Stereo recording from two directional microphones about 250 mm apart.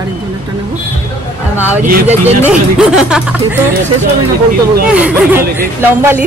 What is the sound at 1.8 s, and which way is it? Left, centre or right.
Speech, right.